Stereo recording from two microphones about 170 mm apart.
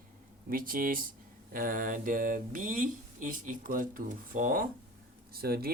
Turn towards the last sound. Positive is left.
turn(degrees=-65)  # may be behind; listen again after turning